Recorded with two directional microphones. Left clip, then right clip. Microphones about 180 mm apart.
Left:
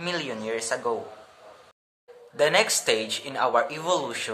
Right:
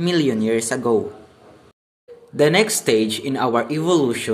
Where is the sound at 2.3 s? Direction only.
15° right (ahead or behind).